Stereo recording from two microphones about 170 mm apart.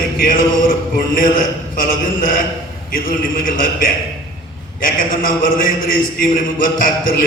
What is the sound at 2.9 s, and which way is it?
A man's voice, 55° left (ahead or behind).